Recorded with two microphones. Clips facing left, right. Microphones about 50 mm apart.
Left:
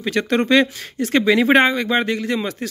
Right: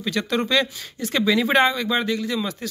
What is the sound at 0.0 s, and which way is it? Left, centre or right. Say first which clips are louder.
Speech: left 4 dB; left.